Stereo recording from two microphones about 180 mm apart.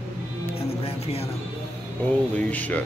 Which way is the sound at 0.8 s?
35° left (ahead or behind).